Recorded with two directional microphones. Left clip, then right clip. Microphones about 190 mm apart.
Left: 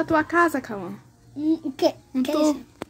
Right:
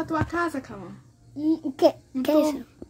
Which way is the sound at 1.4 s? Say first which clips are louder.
Right 1 dB; 30° right (ahead or behind).